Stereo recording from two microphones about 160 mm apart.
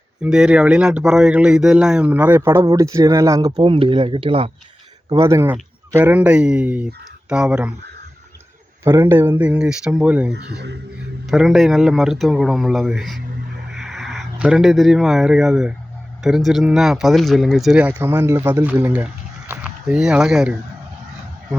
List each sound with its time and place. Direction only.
0.2 s speech: 5° right (ahead or behind); by 3.5 s 20° right (ahead or behind)
3.6 s speech: 30° right (ahead or behind)
5.0 s speech: 20° right (ahead or behind); by 7.7 s 5° right (ahead or behind)
8.8 s speech: 15° right (ahead or behind)
10.3 s speech: 90° right
11.3 s speech: centre (ahead or behind)